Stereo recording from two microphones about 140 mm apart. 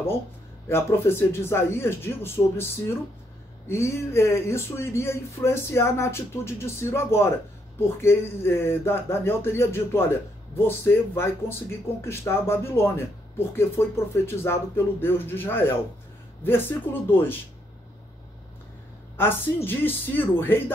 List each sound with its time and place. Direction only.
0.7 s speech: 15° left (ahead or behind)
19.1 s speech: 15° left (ahead or behind)